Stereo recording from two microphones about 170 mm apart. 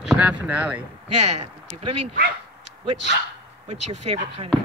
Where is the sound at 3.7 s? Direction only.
40° right (ahead or behind).